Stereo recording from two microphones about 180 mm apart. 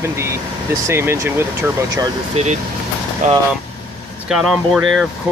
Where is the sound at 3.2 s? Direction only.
45° right (ahead or behind).